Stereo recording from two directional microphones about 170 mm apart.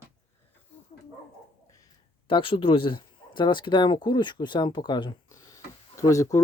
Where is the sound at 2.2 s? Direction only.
30° left (ahead or behind).